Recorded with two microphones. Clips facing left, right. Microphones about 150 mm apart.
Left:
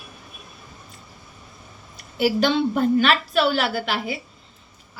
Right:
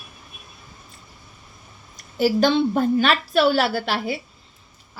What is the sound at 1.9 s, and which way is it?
A woman's voice, 35° right (ahead or behind).